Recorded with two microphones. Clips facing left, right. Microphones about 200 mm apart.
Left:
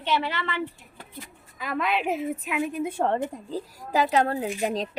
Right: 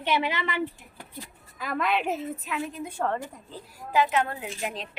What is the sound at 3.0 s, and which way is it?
Speech, 25° left (ahead or behind).